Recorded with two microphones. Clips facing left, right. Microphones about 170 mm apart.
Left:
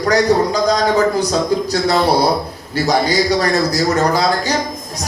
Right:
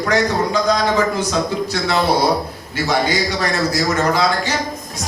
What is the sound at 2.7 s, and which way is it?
A man's voice, 40° left (ahead or behind).